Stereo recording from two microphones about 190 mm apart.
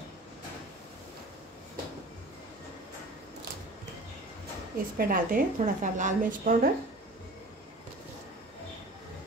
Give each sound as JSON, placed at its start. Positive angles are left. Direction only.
{"t": 4.9, "sound": "a woman's voice", "side_deg": -50}